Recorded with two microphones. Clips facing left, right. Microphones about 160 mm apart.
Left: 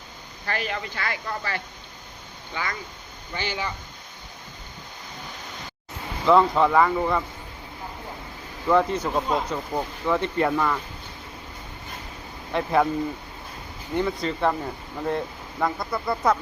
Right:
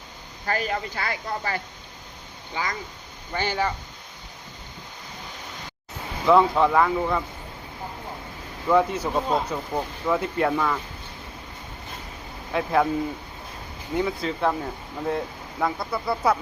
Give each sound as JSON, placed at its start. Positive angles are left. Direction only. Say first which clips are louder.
{"t": 0.4, "sound": "speech", "louder": "right 3 dB", "side_deg": -40}
{"t": 3.3, "sound": "speech", "louder": "right 5 dB", "side_deg": -50}
{"t": 6.2, "sound": "speech", "louder": "even", "side_deg": 0}
{"t": 8.7, "sound": "speech", "louder": "even", "side_deg": -5}
{"t": 12.5, "sound": "speech", "louder": "even", "side_deg": 0}
{"t": 13.9, "sound": "speech", "louder": "even", "side_deg": -5}